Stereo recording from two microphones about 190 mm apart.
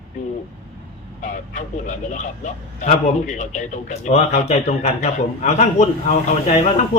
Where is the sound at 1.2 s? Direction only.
40° left (ahead or behind).